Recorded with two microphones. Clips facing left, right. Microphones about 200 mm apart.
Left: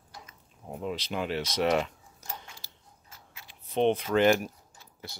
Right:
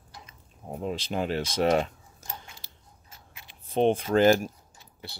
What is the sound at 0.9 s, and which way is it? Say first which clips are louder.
Speech: right 3 dB; 40° right (ahead or behind).